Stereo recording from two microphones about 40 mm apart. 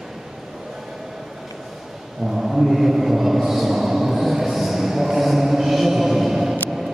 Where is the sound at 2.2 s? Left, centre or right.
Centre.